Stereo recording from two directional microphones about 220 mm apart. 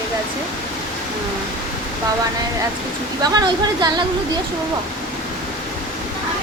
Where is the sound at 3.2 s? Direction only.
20° right (ahead or behind).